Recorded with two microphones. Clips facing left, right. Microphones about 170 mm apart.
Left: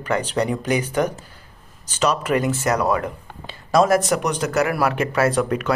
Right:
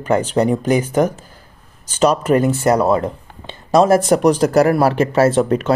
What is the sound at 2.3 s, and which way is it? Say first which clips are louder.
Speech: right 6 dB; 35° right (ahead or behind).